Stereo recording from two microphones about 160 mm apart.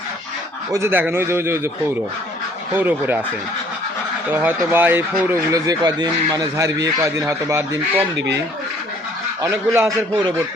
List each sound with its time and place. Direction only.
0.7 s speech: 15° right (ahead or behind)
2.7 s speech: 10° right (ahead or behind)
4.3 s speech: 10° right (ahead or behind)
9.4 s speech: 15° right (ahead or behind)